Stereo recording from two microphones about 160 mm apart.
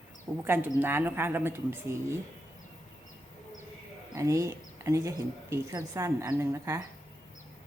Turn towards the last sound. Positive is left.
turn(degrees=-15)  # may be behind; listen again after turning